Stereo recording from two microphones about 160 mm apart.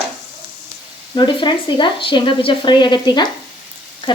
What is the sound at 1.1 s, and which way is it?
Speech, 30° left (ahead or behind).